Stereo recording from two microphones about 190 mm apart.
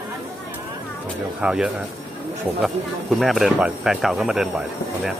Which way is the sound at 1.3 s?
5° right (ahead or behind).